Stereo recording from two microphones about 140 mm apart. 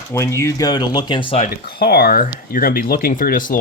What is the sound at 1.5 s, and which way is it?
Speech, 90° left.